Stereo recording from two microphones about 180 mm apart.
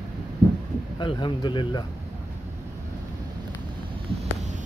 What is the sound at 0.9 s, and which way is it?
Speech, 25° left (ahead or behind).